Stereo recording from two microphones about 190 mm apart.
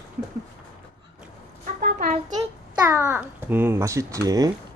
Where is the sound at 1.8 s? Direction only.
50° right (ahead or behind).